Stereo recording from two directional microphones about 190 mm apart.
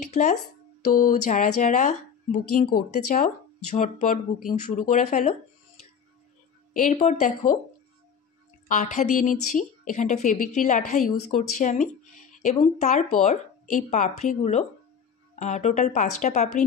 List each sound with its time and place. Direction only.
0.1 s a woman's voice: 40° left (ahead or behind)
6.7 s a woman's voice: 40° left (ahead or behind)
8.6 s a woman's voice: 40° left (ahead or behind)
12.5 s a woman's voice: 30° left (ahead or behind)